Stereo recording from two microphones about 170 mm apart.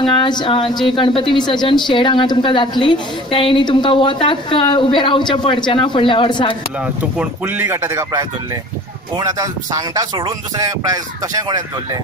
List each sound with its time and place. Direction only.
0.0 s a woman's voice: 30° left (ahead or behind)
7.0 s speech: 10° right (ahead or behind)